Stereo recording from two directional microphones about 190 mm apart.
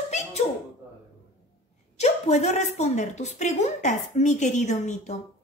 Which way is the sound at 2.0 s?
35° left (ahead or behind).